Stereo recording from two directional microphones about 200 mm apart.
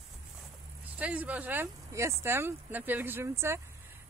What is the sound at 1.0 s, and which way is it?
A woman's voice, 5° right (ahead or behind).